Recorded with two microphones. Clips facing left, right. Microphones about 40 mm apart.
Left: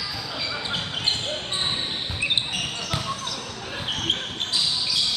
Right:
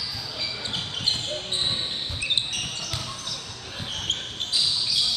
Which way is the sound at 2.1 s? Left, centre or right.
Centre.